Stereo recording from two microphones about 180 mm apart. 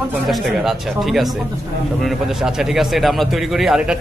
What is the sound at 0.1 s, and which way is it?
A man's voice, centre (ahead or behind).